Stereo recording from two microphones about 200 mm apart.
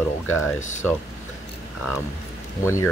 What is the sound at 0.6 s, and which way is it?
Speech, 35° left (ahead or behind).